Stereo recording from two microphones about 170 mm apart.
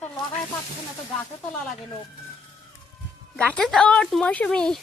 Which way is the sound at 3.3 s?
5° left (ahead or behind).